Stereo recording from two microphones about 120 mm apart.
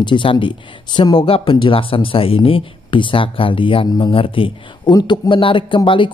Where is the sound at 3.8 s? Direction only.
35° left (ahead or behind).